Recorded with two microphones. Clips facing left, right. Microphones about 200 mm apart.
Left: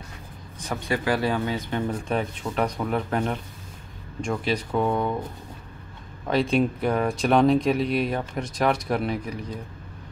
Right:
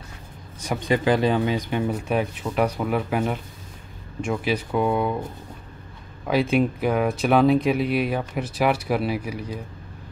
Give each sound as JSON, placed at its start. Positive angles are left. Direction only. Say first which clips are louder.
{"t": 0.6, "sound": "speech", "louder": "right 4 dB", "side_deg": -15}
{"t": 6.2, "sound": "speech", "louder": "right 1 dB", "side_deg": -5}